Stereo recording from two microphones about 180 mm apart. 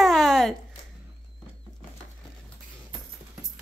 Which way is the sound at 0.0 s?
Centre (ahead or behind).